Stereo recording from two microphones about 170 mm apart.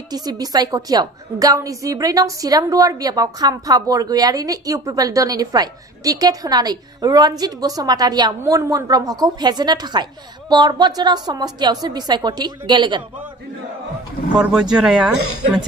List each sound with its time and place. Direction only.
0.1 s a woman's voice: 25° right (ahead or behind)
14.4 s speech: 5° right (ahead or behind)